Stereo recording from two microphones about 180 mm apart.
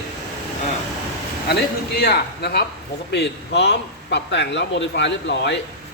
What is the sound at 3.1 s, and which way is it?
A man's voice, 75° left (ahead or behind).